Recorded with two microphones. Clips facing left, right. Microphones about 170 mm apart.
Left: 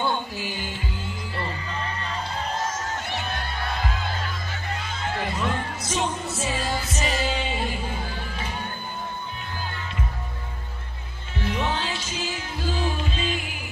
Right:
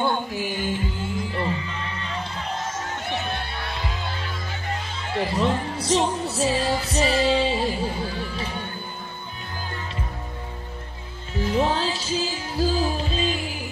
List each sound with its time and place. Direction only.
0.4 s music: 50° right (ahead or behind)
1.7 s music: 40° left (ahead or behind)
5.1 s music: 30° right (ahead or behind)
11.3 s music: 35° right (ahead or behind)